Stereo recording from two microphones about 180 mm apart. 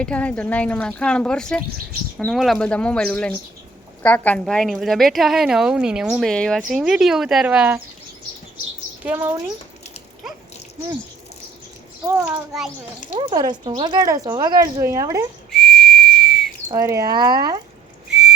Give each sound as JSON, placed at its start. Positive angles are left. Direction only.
{"t": 0.0, "sound": "a woman's voice", "side_deg": 5}
{"t": 9.0, "sound": "speech", "side_deg": -15}
{"t": 13.1, "sound": "speech", "side_deg": -25}
{"t": 15.4, "sound": "whistle", "side_deg": 0}
{"t": 16.6, "sound": "speech", "side_deg": -15}
{"t": 18.1, "sound": "whistle", "side_deg": -5}